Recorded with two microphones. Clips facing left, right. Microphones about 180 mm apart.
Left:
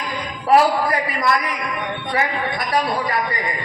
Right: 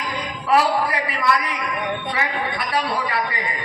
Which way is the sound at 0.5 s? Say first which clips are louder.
Left 3 dB; 40° left (ahead or behind).